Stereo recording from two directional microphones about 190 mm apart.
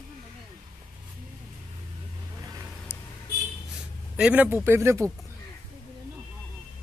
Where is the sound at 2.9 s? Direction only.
10° left (ahead or behind).